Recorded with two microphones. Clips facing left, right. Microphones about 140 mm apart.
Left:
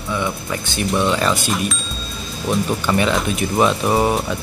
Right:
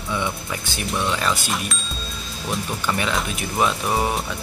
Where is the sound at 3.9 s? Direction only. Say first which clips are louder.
Left 5 dB; 15° left (ahead or behind).